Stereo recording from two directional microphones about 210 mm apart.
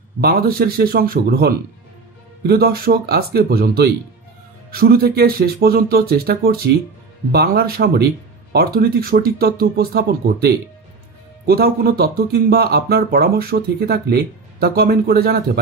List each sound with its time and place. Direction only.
0.2 s speech: 45° right (ahead or behind)